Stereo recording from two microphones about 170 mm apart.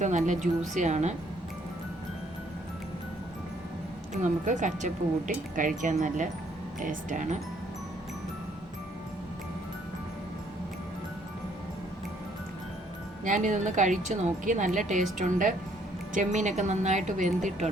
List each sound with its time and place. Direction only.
0.0 s speech: 45° right (ahead or behind)
4.1 s speech: 45° right (ahead or behind)
13.2 s speech: 45° right (ahead or behind)